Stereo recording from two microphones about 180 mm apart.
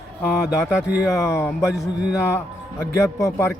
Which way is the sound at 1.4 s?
15° left (ahead or behind).